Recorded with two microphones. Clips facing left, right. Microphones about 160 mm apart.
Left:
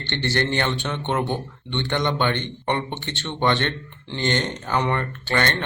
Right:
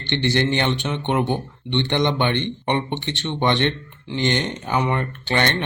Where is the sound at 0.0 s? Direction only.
15° right (ahead or behind).